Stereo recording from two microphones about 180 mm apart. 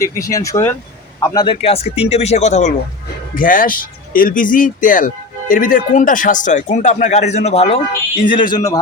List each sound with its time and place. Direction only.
0.0 s speech: 20° left (ahead or behind); by 2.7 s 40° left (ahead or behind)
3.3 s speech: 50° left (ahead or behind); by 8.8 s 20° left (ahead or behind)